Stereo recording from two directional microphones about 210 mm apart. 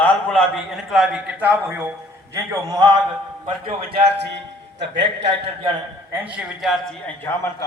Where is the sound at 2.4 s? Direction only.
15° right (ahead or behind).